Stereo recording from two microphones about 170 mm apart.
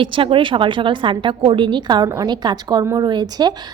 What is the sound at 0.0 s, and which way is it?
Speech, 30° right (ahead or behind).